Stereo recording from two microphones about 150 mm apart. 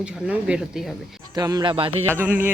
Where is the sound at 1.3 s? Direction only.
25° right (ahead or behind).